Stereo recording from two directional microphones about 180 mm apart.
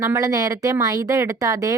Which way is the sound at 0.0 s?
20° right (ahead or behind).